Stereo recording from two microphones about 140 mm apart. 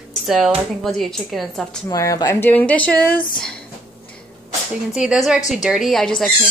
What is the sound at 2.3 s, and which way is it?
Speech, 15° left (ahead or behind).